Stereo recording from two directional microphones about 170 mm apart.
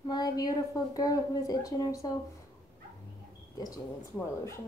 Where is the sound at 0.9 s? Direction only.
20° left (ahead or behind).